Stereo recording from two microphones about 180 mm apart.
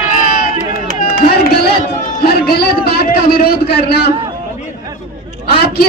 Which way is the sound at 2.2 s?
60° left (ahead or behind).